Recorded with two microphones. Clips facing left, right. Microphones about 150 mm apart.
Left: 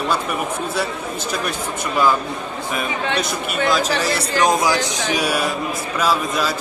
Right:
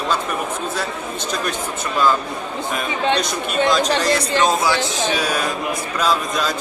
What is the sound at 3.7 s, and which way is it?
A man's voice, 5° left (ahead or behind).